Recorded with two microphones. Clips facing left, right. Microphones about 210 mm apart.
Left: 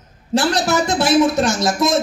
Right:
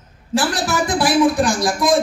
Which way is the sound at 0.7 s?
25° left (ahead or behind).